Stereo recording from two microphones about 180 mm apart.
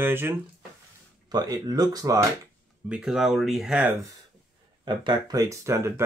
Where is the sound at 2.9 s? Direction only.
Centre (ahead or behind).